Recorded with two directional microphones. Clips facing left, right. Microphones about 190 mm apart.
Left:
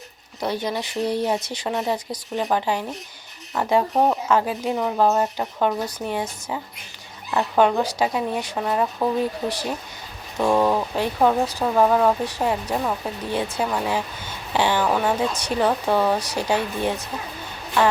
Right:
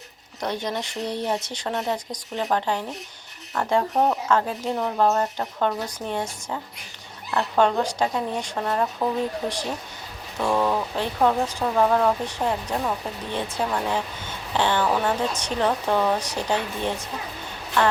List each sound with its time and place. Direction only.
0.3 s speech: 10° left (ahead or behind)
10.4 s speech: 15° left (ahead or behind)